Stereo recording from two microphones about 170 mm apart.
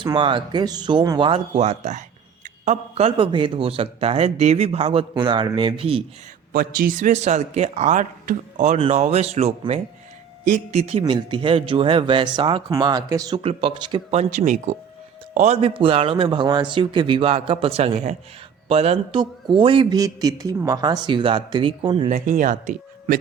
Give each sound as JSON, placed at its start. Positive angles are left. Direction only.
{"t": 0.0, "sound": "a man's voice", "side_deg": -30}
{"t": 1.5, "sound": "speech", "side_deg": -40}
{"t": 6.5, "sound": "a man's voice", "side_deg": -55}
{"t": 13.4, "sound": "a man's voice", "side_deg": -35}
{"t": 22.1, "sound": "speech", "side_deg": -50}